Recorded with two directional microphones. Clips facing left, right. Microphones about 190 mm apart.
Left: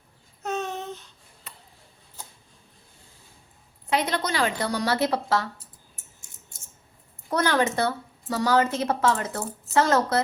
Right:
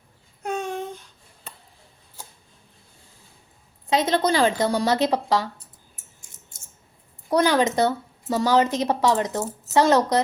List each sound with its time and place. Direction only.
0.4 s a sound: 10° right (ahead or behind)
4.1 s a woman's voice: 30° right (ahead or behind)
7.3 s a woman's voice: 15° right (ahead or behind)